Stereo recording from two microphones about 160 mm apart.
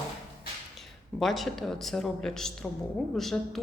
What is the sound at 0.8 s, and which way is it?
Speech, centre (ahead or behind).